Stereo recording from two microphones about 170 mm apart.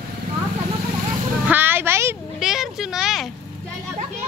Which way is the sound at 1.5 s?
10° right (ahead or behind).